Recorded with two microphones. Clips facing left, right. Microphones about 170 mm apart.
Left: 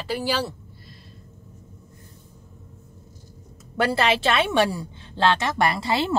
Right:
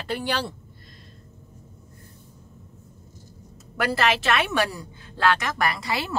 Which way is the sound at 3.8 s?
30° left (ahead or behind).